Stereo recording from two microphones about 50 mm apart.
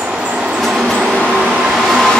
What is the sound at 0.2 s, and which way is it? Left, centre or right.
Train, right.